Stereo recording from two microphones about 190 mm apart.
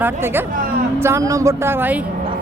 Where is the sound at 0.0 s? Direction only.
10° right (ahead or behind).